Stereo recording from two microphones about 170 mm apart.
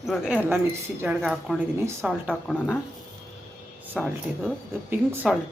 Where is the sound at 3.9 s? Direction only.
5° left (ahead or behind).